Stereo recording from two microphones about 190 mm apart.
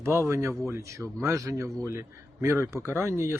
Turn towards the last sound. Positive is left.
turn(degrees=-15)  # may be behind; listen again after turning